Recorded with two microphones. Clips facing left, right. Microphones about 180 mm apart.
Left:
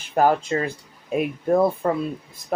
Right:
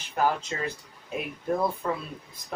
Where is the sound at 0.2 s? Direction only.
50° left (ahead or behind).